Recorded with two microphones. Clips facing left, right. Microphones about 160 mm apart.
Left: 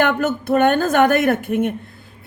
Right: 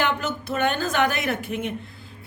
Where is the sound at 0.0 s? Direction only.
50° left (ahead or behind).